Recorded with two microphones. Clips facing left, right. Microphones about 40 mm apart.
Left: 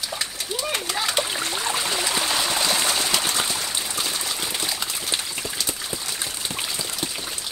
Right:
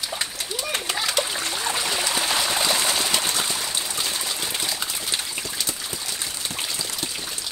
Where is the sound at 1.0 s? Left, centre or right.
Left.